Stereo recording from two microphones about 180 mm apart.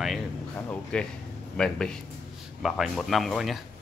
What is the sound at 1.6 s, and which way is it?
Speech, 5° left (ahead or behind).